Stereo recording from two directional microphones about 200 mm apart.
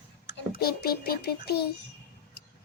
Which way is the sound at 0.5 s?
50° left (ahead or behind).